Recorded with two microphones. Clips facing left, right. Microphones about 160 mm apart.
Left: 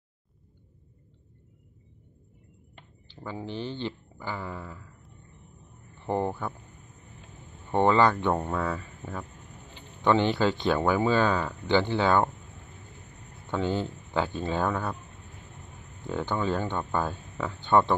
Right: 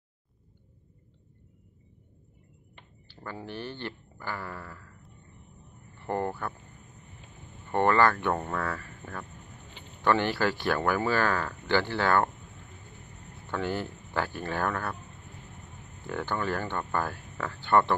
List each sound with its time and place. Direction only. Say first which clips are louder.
3.1 s speech: left 3 dB; 15° left (ahead or behind)
5.9 s speech: left 2 dB; 15° left (ahead or behind)
7.7 s speech: left 2 dB; 15° left (ahead or behind)
13.5 s speech: left 3 dB; 20° left (ahead or behind)
16.1 s speech: left 3 dB; 20° left (ahead or behind)